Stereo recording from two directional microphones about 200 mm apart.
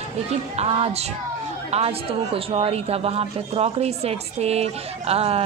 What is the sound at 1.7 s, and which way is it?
A woman's voice, 30° right (ahead or behind).